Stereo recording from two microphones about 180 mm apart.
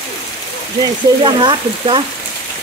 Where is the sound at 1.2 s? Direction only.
25° right (ahead or behind).